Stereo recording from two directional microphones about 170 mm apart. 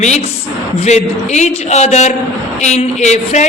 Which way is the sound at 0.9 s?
45° left (ahead or behind).